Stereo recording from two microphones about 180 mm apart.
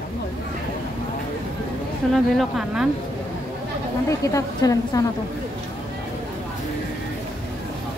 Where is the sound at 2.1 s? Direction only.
Centre (ahead or behind).